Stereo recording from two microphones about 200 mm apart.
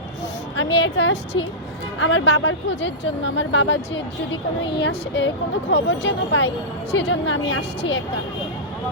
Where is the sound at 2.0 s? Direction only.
70° left (ahead or behind).